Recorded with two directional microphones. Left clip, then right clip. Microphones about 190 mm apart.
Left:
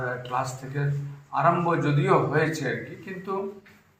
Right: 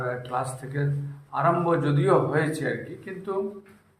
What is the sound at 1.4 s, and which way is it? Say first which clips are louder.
A man's voice: even; 30° right (ahead or behind).